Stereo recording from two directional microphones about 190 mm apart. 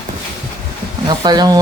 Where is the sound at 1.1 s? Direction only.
20° right (ahead or behind).